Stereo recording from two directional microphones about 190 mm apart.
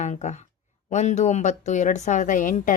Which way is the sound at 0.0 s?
40° left (ahead or behind).